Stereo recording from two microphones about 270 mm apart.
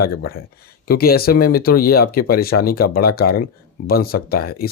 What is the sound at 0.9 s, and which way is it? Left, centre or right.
Speech, left.